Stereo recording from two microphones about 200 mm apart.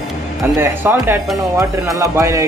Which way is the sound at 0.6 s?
10° right (ahead or behind).